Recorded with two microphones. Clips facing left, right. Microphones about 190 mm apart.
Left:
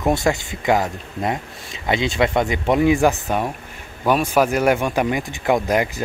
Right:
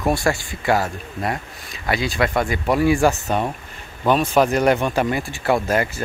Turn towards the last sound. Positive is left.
turn(degrees=15)  # may be behind; listen again after turning